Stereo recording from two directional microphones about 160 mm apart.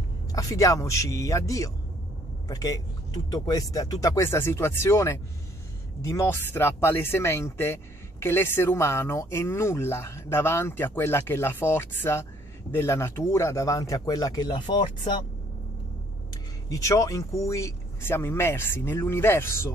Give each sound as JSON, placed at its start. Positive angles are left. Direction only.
{"t": 0.3, "sound": "speech", "side_deg": 20}
{"t": 16.6, "sound": "speech", "side_deg": 20}